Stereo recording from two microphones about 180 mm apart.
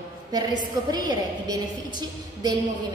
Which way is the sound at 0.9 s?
20° right (ahead or behind).